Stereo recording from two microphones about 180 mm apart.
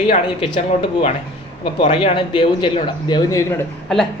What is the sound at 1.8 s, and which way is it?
Speech, 35° left (ahead or behind).